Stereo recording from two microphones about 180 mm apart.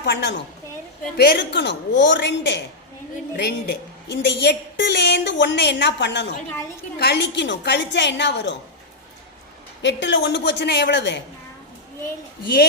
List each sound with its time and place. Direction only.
0.0 s a woman's voice: 75° left (ahead or behind)
3.3 s a woman's voice: 65° left (ahead or behind)
9.8 s a woman's voice: 85° left